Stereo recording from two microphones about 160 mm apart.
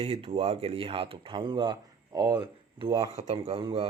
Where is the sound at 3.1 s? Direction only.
40° right (ahead or behind).